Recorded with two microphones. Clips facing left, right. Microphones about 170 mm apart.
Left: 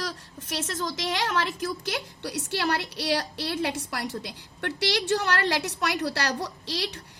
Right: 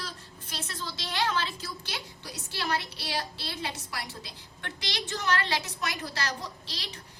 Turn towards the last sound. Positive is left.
turn(degrees=75)  # may be behind; listen again after turning